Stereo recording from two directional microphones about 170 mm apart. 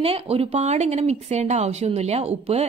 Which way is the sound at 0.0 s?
35° right (ahead or behind).